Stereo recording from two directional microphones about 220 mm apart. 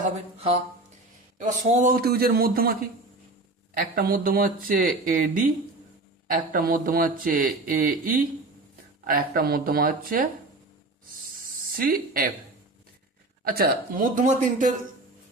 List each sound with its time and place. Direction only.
0.0 s a man's voice: 25° right (ahead or behind); by 2.7 s 45° right (ahead or behind)
3.8 s speech: 40° right (ahead or behind)
11.8 s speech: 40° right (ahead or behind)
13.4 s speech: 45° right (ahead or behind)